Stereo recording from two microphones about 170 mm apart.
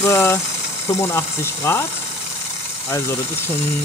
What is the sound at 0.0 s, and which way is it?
Speech, 15° left (ahead or behind).